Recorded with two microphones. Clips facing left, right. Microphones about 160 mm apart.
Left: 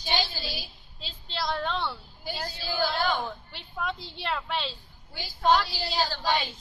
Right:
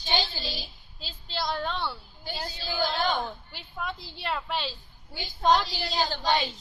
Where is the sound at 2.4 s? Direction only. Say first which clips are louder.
Even; 20° right (ahead or behind).